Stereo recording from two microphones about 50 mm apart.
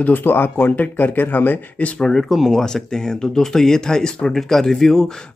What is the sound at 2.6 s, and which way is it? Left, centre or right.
Speech, centre.